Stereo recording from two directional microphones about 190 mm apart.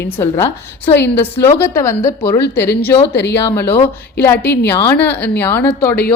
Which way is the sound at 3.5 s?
10° left (ahead or behind).